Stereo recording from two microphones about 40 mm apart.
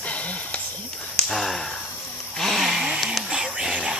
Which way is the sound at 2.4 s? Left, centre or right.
Centre.